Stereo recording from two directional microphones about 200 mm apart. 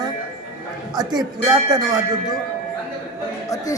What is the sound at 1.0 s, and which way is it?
Speech, 20° right (ahead or behind).